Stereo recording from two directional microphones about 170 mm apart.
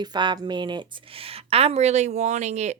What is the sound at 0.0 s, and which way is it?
A woman's voice, 25° right (ahead or behind).